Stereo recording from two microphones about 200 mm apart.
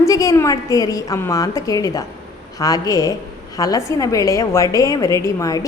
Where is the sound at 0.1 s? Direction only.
15° left (ahead or behind).